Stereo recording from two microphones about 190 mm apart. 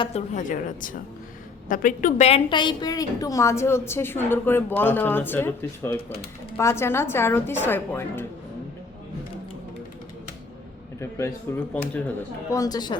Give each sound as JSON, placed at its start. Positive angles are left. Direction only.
{"t": 0.0, "sound": "a woman's voice", "side_deg": 35}
{"t": 11.0, "sound": "a woman's voice", "side_deg": 15}